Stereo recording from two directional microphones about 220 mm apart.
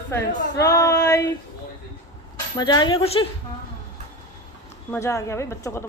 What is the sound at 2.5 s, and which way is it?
Speech, 20° left (ahead or behind).